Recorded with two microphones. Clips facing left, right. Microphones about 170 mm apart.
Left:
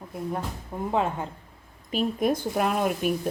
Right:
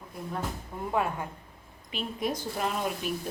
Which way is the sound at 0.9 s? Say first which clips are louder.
Left 3 dB; 25° left (ahead or behind).